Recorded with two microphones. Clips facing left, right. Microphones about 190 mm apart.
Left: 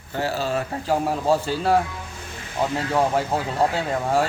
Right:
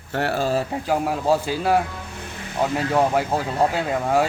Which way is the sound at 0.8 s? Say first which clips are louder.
Left 1 dB; 10° right (ahead or behind).